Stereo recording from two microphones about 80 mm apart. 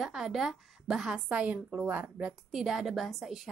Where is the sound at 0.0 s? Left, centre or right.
Centre.